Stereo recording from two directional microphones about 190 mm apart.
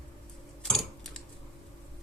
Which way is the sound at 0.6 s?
5° left (ahead or behind).